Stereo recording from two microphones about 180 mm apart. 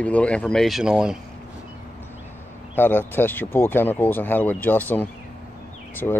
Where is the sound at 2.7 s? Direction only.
10° left (ahead or behind).